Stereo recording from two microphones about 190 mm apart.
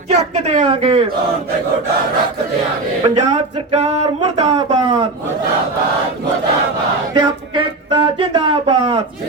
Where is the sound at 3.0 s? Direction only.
35° right (ahead or behind).